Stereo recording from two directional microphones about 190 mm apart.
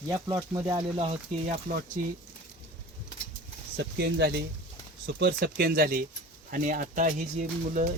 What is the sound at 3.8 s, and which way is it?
Speech, 60° right (ahead or behind).